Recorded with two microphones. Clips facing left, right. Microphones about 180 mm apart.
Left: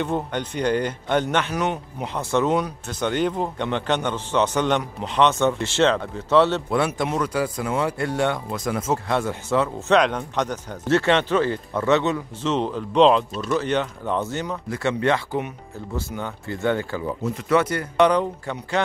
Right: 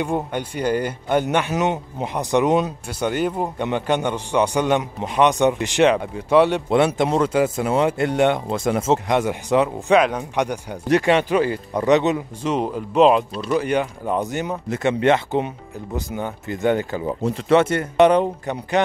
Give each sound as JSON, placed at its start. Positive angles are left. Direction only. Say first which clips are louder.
{"t": 0.0, "sound": "speech", "louder": "right 2 dB", "side_deg": -10}
{"t": 1.5, "sound": "speech", "louder": "right 3 dB", "side_deg": -20}
{"t": 7.0, "sound": "speech", "louder": "right 5 dB", "side_deg": -25}
{"t": 17.2, "sound": "speech", "louder": "right 4 dB", "side_deg": -30}